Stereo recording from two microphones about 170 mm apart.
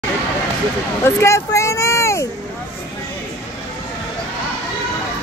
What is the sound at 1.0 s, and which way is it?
Speech, 15° left (ahead or behind).